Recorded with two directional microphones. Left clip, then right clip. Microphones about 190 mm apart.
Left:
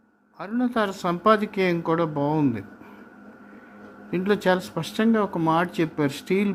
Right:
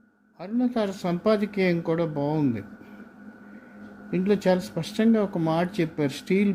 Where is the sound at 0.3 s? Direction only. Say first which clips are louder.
Left 2 dB; 15° right (ahead or behind).